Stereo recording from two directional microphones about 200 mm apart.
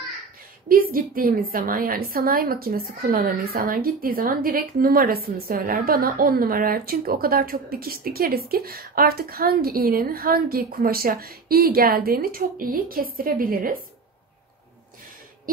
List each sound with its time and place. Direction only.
0.9 s a woman's voice: 45° right (ahead or behind)